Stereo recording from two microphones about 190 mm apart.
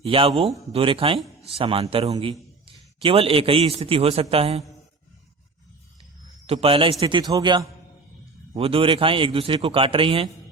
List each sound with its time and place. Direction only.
0.0 s a man's voice: 30° right (ahead or behind)
6.5 s a man's voice: 30° right (ahead or behind)